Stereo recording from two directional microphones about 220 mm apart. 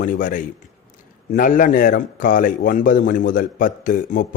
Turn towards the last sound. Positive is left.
turn(degrees=40)  # may be behind; listen again after turning